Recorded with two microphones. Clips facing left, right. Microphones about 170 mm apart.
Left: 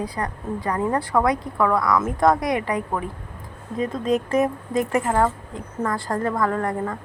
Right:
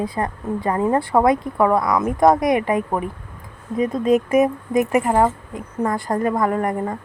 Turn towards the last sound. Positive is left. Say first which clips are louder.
# right 3 dB
turn(degrees=-20)  # may be behind; listen again after turning